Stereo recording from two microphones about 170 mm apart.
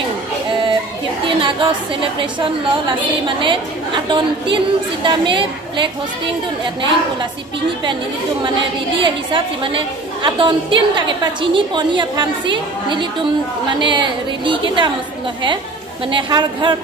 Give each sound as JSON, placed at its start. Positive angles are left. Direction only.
{"t": 1.3, "sound": "a woman's voice", "side_deg": -30}
{"t": 8.9, "sound": "a woman's voice", "side_deg": -30}
{"t": 16.1, "sound": "a woman's voice", "side_deg": -25}